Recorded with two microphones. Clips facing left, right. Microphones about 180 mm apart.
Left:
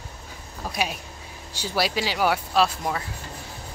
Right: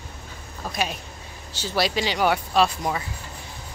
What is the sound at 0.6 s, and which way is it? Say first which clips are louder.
Speech: even; 10° left (ahead or behind).